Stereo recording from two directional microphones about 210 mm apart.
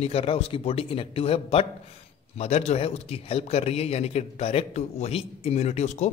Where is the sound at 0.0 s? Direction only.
30° left (ahead or behind).